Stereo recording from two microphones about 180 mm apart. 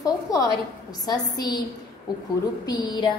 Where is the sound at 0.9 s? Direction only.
20° left (ahead or behind).